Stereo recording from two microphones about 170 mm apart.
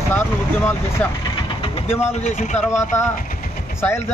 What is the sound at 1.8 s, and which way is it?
Speech, 35° left (ahead or behind).